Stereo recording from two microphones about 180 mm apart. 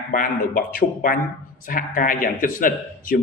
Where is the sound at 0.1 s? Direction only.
50° left (ahead or behind).